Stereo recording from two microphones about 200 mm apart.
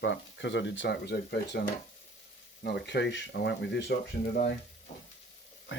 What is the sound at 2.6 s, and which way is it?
Speech, 55° left (ahead or behind).